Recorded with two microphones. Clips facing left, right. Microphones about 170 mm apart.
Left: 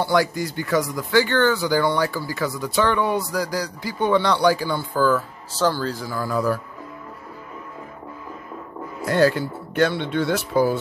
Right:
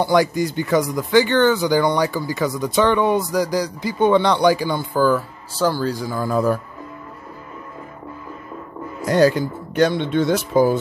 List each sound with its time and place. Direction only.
0.0 s speech: 20° right (ahead or behind)
9.0 s speech: 15° right (ahead or behind)